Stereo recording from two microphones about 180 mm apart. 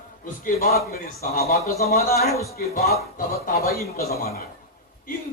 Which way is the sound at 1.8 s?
60° left (ahead or behind).